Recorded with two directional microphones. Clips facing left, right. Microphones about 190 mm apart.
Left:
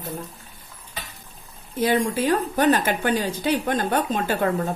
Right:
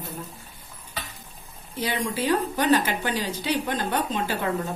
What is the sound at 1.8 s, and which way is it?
Speech, 50° left (ahead or behind).